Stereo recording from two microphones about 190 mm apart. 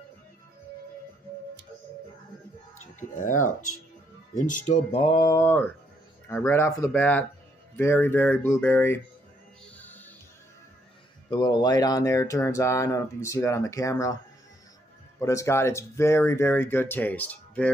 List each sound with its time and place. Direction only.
3.0 s speech: 45° left (ahead or behind); by 9.0 s 10° left (ahead or behind)
9.8 s music: 10° left (ahead or behind)
11.2 s speech: 20° left (ahead or behind)
15.1 s speech: 15° left (ahead or behind)